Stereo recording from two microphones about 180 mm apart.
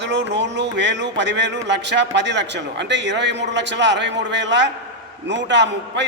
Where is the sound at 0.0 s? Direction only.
75° right (ahead or behind).